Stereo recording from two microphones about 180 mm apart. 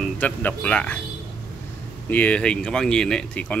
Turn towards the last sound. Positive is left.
turn(degrees=5)  # may be behind; listen again after turning